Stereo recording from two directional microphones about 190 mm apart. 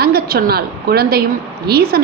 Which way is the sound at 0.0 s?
55° right (ahead or behind).